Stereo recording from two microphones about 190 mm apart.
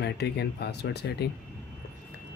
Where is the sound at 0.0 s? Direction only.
60° left (ahead or behind).